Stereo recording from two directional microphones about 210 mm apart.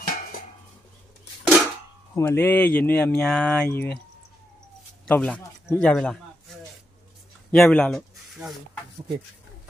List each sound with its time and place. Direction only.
0.0 s dishes: 45° left (ahead or behind)
1.4 s a sound: centre (ahead or behind)
2.1 s speech: 10° left (ahead or behind)
5.0 s a man's voice: 5° left (ahead or behind)
7.5 s speech: 5° left (ahead or behind)